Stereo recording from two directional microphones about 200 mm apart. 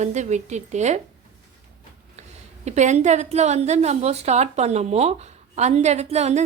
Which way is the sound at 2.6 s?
35° right (ahead or behind).